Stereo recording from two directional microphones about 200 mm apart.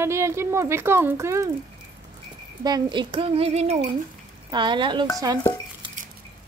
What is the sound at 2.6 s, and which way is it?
Speech, 20° right (ahead or behind).